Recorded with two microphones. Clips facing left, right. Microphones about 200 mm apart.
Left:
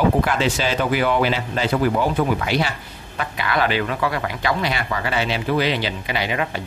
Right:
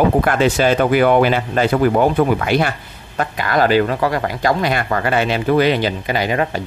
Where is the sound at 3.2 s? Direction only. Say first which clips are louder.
Right 5 dB; 45° right (ahead or behind).